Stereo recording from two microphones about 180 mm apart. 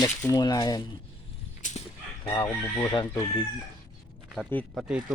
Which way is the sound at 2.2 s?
25° left (ahead or behind).